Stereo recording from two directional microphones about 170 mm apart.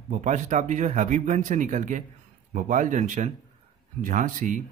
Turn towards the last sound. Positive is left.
turn(degrees=-50)  # may be behind; listen again after turning